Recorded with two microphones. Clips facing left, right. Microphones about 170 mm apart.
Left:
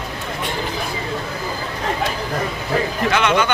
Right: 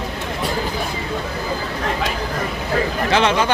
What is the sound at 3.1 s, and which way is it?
Speech, 30° right (ahead or behind).